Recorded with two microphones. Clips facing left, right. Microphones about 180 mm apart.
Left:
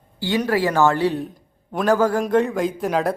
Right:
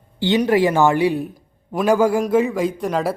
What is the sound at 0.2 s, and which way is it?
Speech, 20° right (ahead or behind).